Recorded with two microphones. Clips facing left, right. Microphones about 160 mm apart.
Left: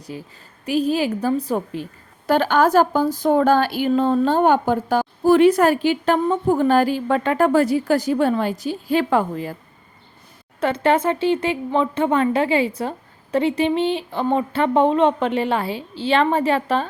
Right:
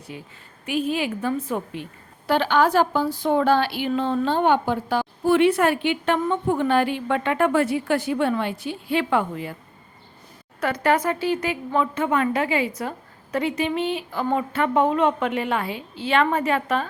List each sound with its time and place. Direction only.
0.1 s a woman's voice: 35° left (ahead or behind)
10.6 s speech: 25° left (ahead or behind)